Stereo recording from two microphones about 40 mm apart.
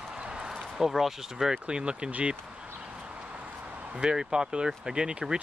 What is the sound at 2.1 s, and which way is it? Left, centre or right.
Speech, right.